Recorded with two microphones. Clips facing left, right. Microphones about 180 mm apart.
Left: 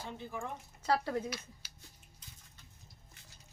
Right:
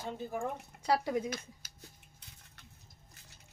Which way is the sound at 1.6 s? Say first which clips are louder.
Even; 45° right (ahead or behind).